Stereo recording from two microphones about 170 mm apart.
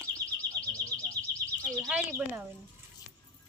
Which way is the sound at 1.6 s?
Centre (ahead or behind).